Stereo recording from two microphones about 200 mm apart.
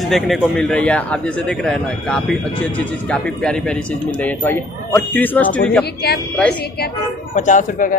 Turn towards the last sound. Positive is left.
turn(degrees=40)  # may be behind; listen again after turning